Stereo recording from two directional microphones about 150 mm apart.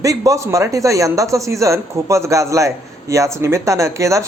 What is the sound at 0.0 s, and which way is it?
A man's voice, 20° right (ahead or behind).